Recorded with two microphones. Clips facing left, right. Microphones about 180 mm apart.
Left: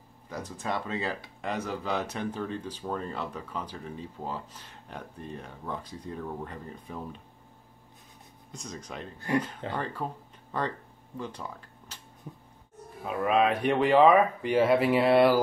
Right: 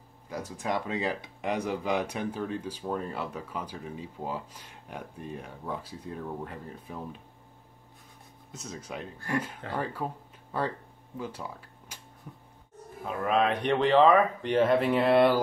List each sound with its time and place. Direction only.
0.3 s speech: 10° right (ahead or behind)
8.5 s speech: 5° right (ahead or behind)
12.3 s dog: 20° left (ahead or behind)
13.0 s speech: 5° left (ahead or behind)